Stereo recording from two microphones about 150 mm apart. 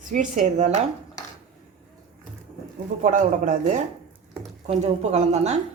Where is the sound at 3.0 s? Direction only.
55° right (ahead or behind).